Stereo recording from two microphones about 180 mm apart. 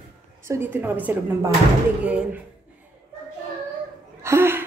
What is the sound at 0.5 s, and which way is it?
A woman's voice, 10° right (ahead or behind).